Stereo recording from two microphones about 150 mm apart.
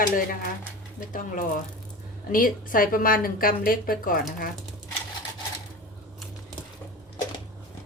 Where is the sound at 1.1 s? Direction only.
65° left (ahead or behind).